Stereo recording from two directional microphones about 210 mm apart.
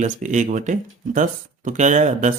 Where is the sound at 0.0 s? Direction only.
35° right (ahead or behind).